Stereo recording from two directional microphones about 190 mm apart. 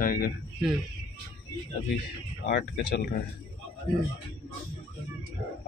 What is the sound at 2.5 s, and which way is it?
Speech, 55° left (ahead or behind).